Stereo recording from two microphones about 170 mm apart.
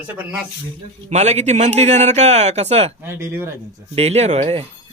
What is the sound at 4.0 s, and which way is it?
Speech, 40° right (ahead or behind).